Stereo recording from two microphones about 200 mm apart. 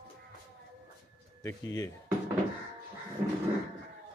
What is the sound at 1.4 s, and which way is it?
Speech, 15° left (ahead or behind).